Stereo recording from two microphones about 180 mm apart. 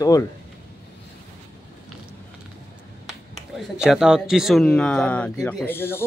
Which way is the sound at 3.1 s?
Centre (ahead or behind).